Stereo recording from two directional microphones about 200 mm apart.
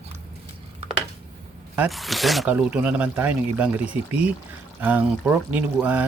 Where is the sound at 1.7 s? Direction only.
5° right (ahead or behind).